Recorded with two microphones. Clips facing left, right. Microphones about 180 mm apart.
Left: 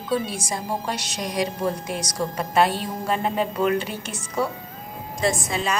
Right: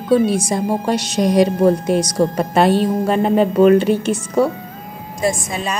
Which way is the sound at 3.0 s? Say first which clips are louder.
Right 9 dB; 25° right (ahead or behind).